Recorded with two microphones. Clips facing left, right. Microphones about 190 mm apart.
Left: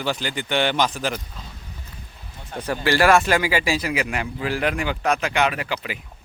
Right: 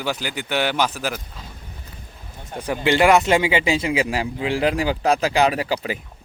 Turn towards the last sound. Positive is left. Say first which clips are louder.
# right 5 dB
turn(degrees=-35)  # may be behind; listen again after turning